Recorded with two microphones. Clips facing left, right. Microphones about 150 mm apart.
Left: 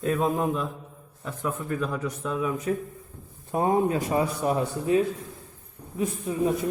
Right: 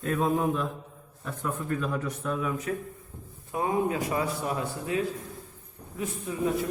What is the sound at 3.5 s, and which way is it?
A man's voice, 35° left (ahead or behind).